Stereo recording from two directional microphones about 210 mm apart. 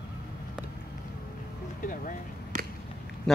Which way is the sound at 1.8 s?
40° left (ahead or behind).